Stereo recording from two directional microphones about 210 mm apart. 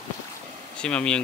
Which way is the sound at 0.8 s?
5° left (ahead or behind).